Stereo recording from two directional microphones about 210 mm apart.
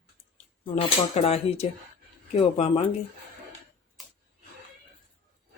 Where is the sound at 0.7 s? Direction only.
30° left (ahead or behind).